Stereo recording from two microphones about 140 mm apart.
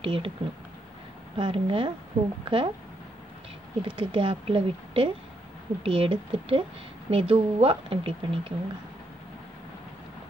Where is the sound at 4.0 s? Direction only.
40° right (ahead or behind).